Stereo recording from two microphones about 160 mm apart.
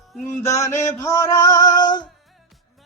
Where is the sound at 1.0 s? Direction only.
20° left (ahead or behind).